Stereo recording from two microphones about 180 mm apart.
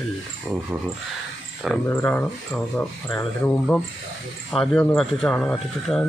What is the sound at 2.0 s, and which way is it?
Speech, 10° left (ahead or behind).